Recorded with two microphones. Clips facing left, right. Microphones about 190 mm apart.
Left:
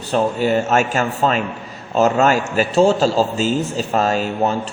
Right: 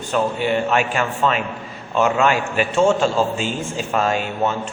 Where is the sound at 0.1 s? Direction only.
40° left (ahead or behind).